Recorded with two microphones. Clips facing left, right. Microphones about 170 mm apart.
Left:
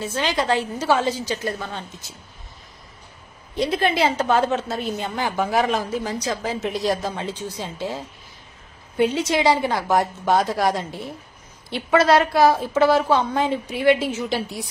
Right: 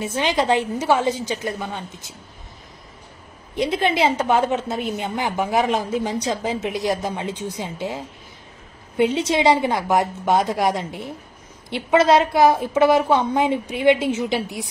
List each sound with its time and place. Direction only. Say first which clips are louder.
0.0 s a woman's voice: right 2 dB; 20° right (ahead or behind)
3.5 s a woman's voice: right 1 dB; 20° right (ahead or behind)